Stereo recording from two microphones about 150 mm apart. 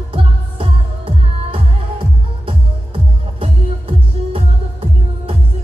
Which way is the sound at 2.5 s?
40° right (ahead or behind).